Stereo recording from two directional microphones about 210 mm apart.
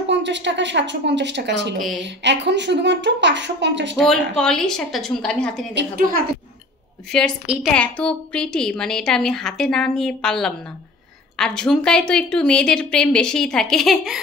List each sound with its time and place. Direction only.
0.1 s a woman's voice: 60° right (ahead or behind)
4.4 s a woman's voice: 5° left (ahead or behind)
5.8 s a woman's voice: 45° right (ahead or behind)
7.1 s a woman's voice: 5° left (ahead or behind)